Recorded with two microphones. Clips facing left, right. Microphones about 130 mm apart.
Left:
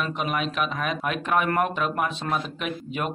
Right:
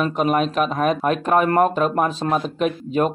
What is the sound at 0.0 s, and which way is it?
Speech, 40° right (ahead or behind).